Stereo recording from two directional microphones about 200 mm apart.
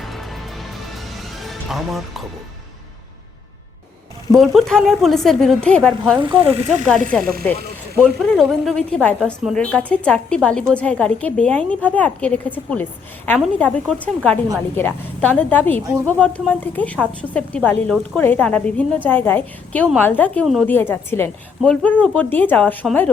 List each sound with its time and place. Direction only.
0.0 s music: centre (ahead or behind)
4.4 s a woman's voice: centre (ahead or behind)
6.1 s speech: 25° right (ahead or behind)
6.8 s a woman's voice: 5° left (ahead or behind)